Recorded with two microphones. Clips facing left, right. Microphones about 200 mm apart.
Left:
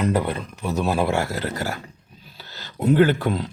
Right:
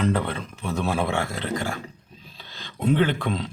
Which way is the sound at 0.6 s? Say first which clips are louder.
Left 3 dB; centre (ahead or behind).